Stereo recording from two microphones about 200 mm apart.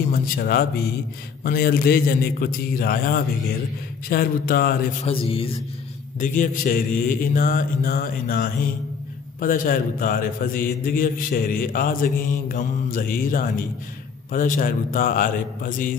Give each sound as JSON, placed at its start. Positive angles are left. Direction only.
{"t": 0.1, "sound": "a man's voice", "side_deg": 50}
{"t": 5.0, "sound": "a man's voice", "side_deg": 30}
{"t": 6.1, "sound": "a man's voice", "side_deg": 40}